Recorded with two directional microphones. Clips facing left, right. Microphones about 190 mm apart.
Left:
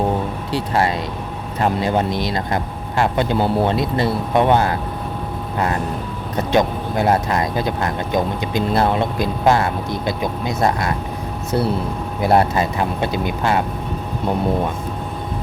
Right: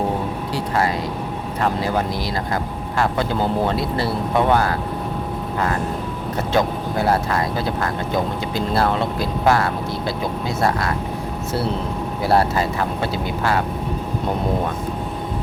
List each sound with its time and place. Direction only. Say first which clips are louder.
0.5 s speech: left 2 dB; 25° left (ahead or behind)
6.3 s speech: left 3 dB; 20° left (ahead or behind)
12.2 s speech: left 2 dB; 20° left (ahead or behind)